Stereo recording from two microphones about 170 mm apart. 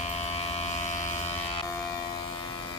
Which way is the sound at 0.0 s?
40° left (ahead or behind).